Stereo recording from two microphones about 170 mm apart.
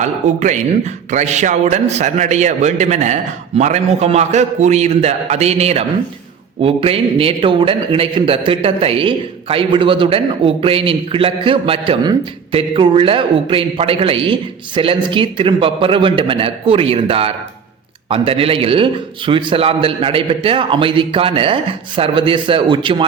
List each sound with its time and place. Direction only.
0.0 s a man's voice: 45° right (ahead or behind); by 23.0 s 30° right (ahead or behind)